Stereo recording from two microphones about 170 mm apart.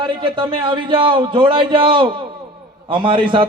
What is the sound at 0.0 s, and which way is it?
A man's voice, 30° right (ahead or behind).